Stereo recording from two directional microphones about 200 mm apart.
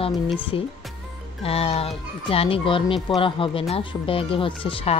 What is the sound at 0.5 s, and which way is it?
Speech, 25° left (ahead or behind).